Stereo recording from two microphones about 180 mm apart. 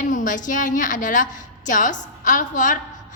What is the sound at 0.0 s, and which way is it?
A woman's voice, 45° left (ahead or behind).